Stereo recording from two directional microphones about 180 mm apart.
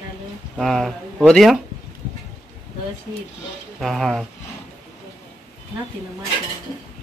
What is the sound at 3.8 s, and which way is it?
Speech, centre (ahead or behind).